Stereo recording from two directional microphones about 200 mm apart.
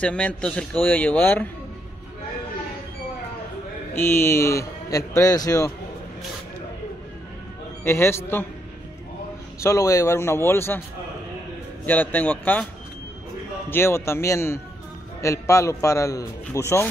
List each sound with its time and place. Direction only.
0.0 s a man's voice: 5° left (ahead or behind)
3.9 s a man's voice: 10° left (ahead or behind)
7.8 s a man's voice: 10° left (ahead or behind)
9.6 s a man's voice: 15° left (ahead or behind)
11.8 s a man's voice: 10° left (ahead or behind)
13.7 s a man's voice: 10° left (ahead or behind)